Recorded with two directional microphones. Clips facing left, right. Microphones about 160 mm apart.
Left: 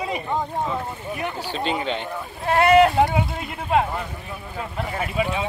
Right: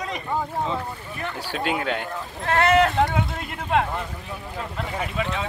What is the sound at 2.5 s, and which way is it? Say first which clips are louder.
Speech: left 4 dB; 10° left (ahead or behind).